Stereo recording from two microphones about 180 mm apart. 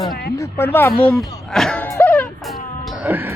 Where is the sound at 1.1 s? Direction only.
Centre (ahead or behind).